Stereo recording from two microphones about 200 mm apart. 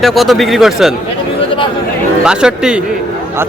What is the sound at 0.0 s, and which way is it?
Speech, centre (ahead or behind).